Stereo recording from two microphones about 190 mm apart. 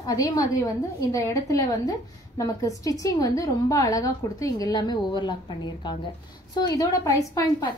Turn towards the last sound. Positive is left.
turn(degrees=20)  # may be behind; listen again after turning